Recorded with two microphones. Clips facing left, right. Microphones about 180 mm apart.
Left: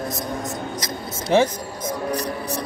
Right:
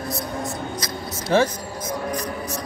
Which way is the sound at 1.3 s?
20° left (ahead or behind).